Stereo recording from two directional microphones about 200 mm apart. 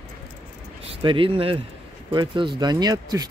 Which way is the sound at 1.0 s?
25° right (ahead or behind).